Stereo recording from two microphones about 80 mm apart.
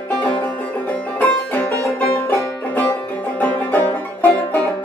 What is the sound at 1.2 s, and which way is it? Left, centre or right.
Music, left.